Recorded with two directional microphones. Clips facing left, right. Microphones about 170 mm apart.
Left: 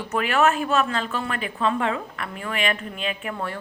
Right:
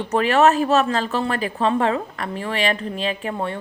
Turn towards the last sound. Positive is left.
turn(degrees=-25)  # may be behind; listen again after turning